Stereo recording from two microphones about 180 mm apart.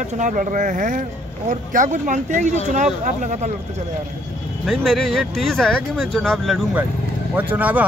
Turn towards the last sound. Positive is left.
turn(degrees=-10)  # may be behind; listen again after turning